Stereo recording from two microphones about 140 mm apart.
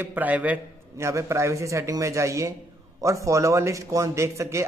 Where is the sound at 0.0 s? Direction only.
10° right (ahead or behind).